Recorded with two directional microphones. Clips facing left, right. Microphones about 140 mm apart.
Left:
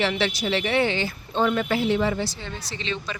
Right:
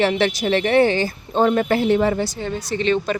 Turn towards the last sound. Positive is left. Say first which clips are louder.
# right 12 dB
turn(degrees=-55)  # may be behind; listen again after turning